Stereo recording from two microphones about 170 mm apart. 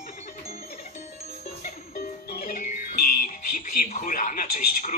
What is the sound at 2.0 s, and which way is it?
Music, 60° left (ahead or behind).